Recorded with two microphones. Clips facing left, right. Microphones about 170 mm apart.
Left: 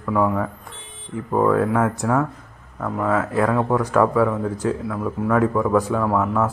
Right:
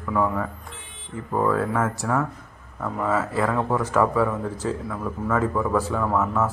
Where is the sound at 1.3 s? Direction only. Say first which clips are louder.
Left 4 dB; 15° left (ahead or behind).